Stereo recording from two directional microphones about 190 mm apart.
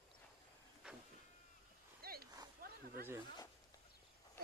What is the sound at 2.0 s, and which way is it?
Dog, 50° right (ahead or behind).